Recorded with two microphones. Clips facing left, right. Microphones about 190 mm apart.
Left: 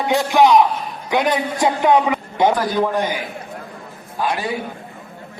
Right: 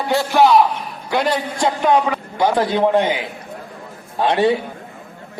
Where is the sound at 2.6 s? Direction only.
25° right (ahead or behind).